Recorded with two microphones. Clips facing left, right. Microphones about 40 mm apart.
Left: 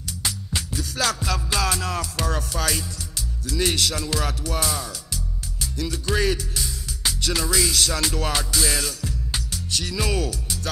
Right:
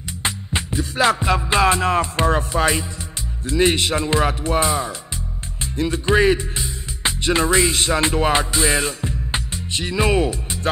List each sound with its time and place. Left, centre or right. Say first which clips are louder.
0.2 s music: right 5 dB; right
3.4 s speech: right 6 dB; right